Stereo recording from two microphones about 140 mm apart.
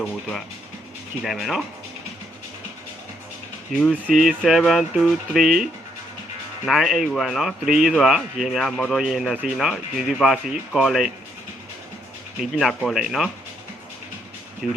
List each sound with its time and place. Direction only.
0.0 s speech: centre (ahead or behind)
3.9 s speech: 10° right (ahead or behind)
4.2 s speech: centre (ahead or behind)
6.7 s speech: centre (ahead or behind)
12.4 s speech: centre (ahead or behind)
14.6 s speech: centre (ahead or behind)